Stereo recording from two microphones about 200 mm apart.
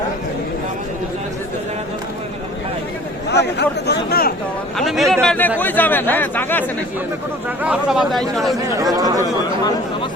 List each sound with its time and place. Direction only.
3.2 s speech: 55° left (ahead or behind)
4.8 s speech: centre (ahead or behind)
7.6 s speech: 5° right (ahead or behind)
8.8 s speech: 20° right (ahead or behind)